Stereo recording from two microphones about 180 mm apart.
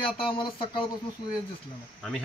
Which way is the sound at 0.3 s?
25° left (ahead or behind).